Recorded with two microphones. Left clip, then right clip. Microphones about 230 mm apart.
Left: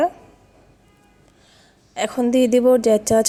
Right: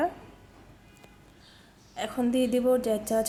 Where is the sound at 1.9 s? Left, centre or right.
Left.